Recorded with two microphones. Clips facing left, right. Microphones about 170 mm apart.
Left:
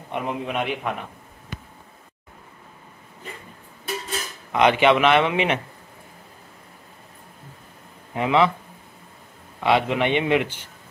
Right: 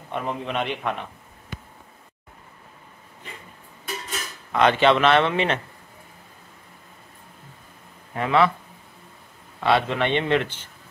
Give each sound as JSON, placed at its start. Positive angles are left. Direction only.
{"t": 0.1, "sound": "a man's voice", "side_deg": 15}
{"t": 4.5, "sound": "a man's voice", "side_deg": 15}
{"t": 8.1, "sound": "speech", "side_deg": 15}
{"t": 9.6, "sound": "a man's voice", "side_deg": 15}